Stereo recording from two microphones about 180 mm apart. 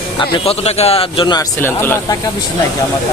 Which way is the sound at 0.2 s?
35° left (ahead or behind).